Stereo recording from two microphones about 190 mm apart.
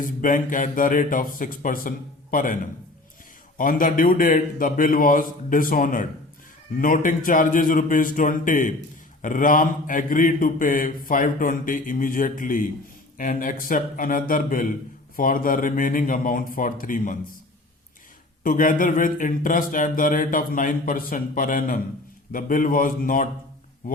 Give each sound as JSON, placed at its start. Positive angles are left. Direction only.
{"t": 0.0, "sound": "speech", "side_deg": 45}
{"t": 3.6, "sound": "speech", "side_deg": 45}
{"t": 18.4, "sound": "speech", "side_deg": 45}